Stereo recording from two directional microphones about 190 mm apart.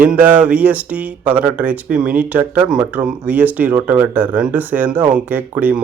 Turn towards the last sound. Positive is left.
turn(degrees=-10)  # may be behind; listen again after turning